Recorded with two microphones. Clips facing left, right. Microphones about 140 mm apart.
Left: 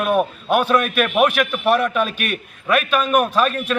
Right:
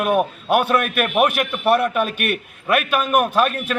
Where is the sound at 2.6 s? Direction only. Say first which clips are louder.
Left 1 dB; 5° right (ahead or behind).